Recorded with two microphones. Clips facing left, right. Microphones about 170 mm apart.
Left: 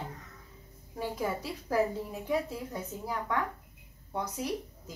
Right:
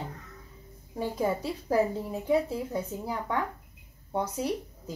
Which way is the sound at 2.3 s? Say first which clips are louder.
Right 6 dB; 30° right (ahead or behind).